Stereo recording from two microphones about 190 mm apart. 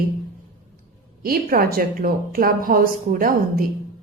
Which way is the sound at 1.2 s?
50° right (ahead or behind).